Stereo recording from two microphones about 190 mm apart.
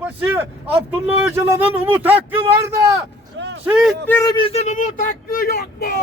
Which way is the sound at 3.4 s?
65° right (ahead or behind).